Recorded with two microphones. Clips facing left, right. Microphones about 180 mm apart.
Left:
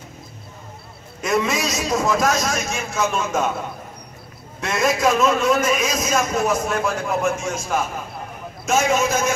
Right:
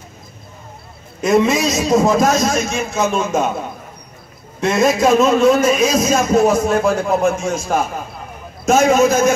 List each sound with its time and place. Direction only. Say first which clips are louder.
1.2 s a man's voice: right 7 dB; 20° right (ahead or behind)
4.6 s a man's voice: right 6 dB; 25° right (ahead or behind)